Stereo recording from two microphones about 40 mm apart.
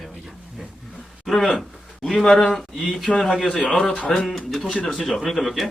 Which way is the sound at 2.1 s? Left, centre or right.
Left.